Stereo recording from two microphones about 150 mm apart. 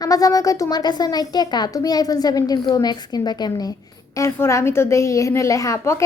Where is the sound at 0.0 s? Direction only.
25° left (ahead or behind).